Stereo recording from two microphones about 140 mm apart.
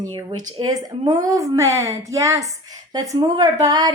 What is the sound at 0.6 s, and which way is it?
A woman's voice, 30° right (ahead or behind).